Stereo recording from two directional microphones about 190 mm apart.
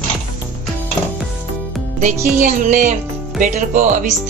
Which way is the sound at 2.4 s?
45° right (ahead or behind).